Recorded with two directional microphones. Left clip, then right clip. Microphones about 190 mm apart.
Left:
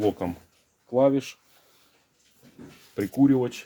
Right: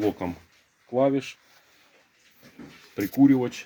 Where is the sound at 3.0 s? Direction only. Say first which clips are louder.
Right 1 dB; 10° left (ahead or behind).